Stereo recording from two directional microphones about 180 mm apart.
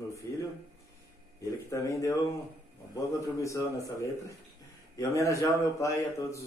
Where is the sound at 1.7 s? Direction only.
15° left (ahead or behind).